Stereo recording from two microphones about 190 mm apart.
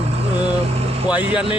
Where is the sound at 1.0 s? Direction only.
10° right (ahead or behind).